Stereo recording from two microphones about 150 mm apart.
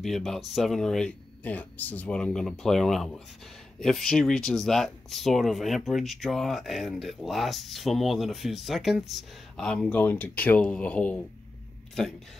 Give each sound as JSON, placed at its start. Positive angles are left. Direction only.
{"t": 0.0, "sound": "speech", "side_deg": 0}